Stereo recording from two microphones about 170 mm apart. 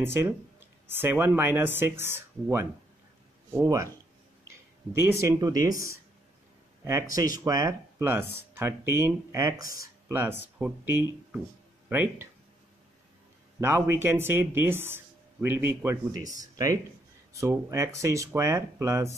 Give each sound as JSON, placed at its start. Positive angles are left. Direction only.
{"t": 0.0, "sound": "speech", "side_deg": -15}
{"t": 4.9, "sound": "speech", "side_deg": -15}
{"t": 6.8, "sound": "speech", "side_deg": -15}
{"t": 13.6, "sound": "speech", "side_deg": -15}